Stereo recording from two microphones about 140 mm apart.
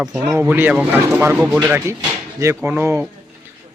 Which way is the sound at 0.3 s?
15° right (ahead or behind).